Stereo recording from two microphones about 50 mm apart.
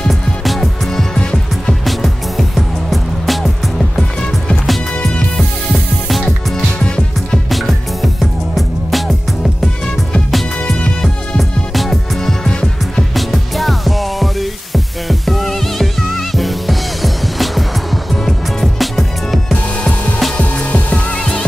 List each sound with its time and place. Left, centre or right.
0.1 s music: centre
1.1 s music: centre
1.9 s music: centre
7.4 s music: centre
11.3 s music: centre
12.4 s music: centre
13.1 s music: centre
19.5 s music: left